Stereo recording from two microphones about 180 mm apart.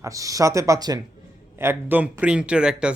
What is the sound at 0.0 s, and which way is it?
Speech, 20° right (ahead or behind).